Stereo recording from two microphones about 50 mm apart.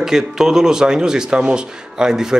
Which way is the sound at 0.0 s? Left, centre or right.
Centre.